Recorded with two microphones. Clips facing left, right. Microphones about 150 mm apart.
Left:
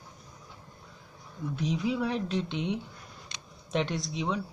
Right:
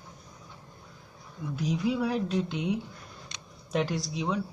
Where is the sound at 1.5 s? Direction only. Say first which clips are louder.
Right 1 dB; centre (ahead or behind).